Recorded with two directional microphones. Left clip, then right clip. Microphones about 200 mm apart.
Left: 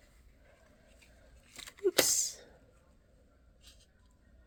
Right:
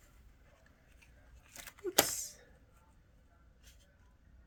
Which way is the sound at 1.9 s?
40° left (ahead or behind).